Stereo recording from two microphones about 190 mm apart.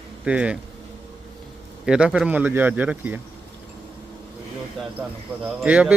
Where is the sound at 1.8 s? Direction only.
5° right (ahead or behind).